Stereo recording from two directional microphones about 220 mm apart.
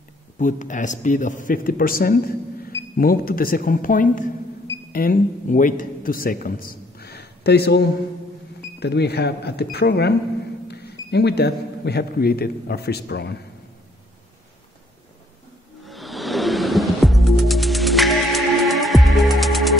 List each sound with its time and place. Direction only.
0.4 s a man's voice: 35° left (ahead or behind)
15.8 s music: centre (ahead or behind)